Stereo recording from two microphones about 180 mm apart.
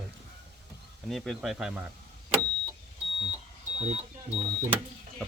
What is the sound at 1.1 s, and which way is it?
Speech, centre (ahead or behind).